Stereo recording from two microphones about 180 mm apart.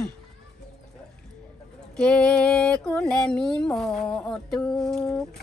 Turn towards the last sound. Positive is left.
turn(degrees=0)  # may be behind; listen again after turning